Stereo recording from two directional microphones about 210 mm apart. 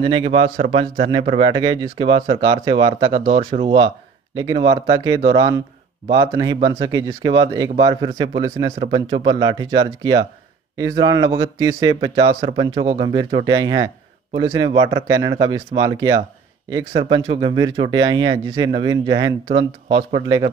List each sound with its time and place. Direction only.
0.0 s a man's voice: 25° right (ahead or behind)